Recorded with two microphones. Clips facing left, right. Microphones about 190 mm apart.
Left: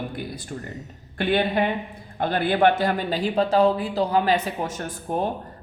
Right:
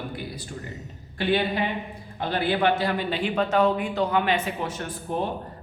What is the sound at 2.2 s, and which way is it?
A man's voice, 50° left (ahead or behind).